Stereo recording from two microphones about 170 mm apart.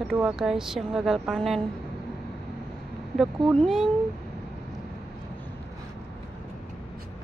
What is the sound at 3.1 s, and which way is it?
Speech, centre (ahead or behind).